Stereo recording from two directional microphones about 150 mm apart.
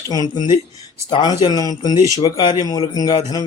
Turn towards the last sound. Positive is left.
turn(degrees=25)  # may be behind; listen again after turning